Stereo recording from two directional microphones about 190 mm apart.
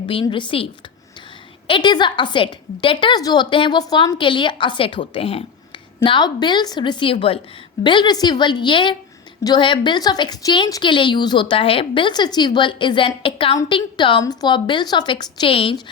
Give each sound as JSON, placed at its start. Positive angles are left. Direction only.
{"t": 0.0, "sound": "a woman's voice", "side_deg": 25}